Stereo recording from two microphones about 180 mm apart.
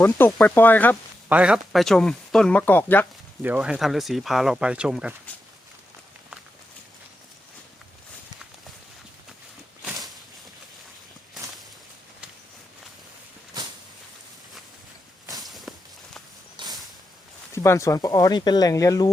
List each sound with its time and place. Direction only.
0.3 s speech: 5° left (ahead or behind)
1.3 s speech: 5° right (ahead or behind)
3.4 s speech: 5° right (ahead or behind)
13.5 s a sound: 20° right (ahead or behind)
15.3 s walk: centre (ahead or behind)
17.5 s speech: 15° left (ahead or behind)